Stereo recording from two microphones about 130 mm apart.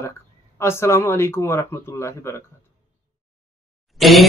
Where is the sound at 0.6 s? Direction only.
20° left (ahead or behind).